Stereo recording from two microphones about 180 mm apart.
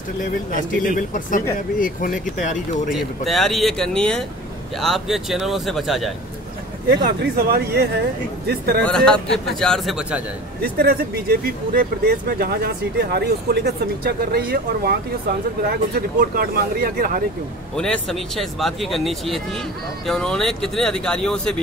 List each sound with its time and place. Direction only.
0.8 s speech: 45° left (ahead or behind)
2.9 s a man's voice: centre (ahead or behind)
7.1 s speech: 60° right (ahead or behind)
8.8 s a man's voice: 5° left (ahead or behind)
10.6 s speech: 60° right (ahead or behind)
17.7 s a man's voice: 5° left (ahead or behind)